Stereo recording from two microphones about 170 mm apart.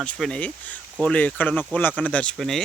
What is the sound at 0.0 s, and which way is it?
Speech, 5° left (ahead or behind).